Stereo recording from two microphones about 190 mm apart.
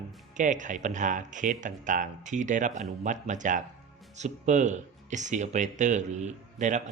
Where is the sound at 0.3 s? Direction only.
40° right (ahead or behind).